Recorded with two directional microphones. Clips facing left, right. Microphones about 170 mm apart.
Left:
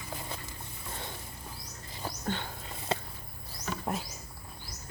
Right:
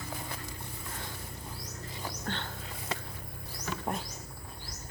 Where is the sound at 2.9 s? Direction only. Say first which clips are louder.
Left 6 dB; 30° left (ahead or behind).